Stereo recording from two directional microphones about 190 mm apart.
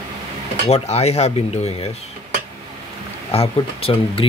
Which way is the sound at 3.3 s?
30° left (ahead or behind).